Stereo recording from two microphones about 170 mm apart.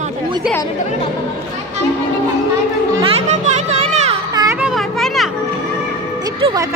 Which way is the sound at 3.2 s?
40° right (ahead or behind).